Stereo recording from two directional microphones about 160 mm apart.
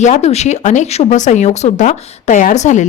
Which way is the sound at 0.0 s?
45° left (ahead or behind).